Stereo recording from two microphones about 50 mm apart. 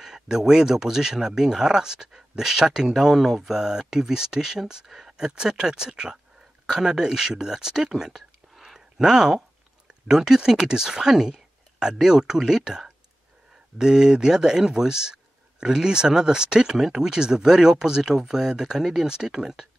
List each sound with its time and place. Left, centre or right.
0.0 s speech: centre